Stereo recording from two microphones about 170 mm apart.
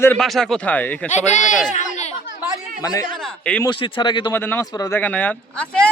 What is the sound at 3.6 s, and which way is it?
Speech, 25° left (ahead or behind).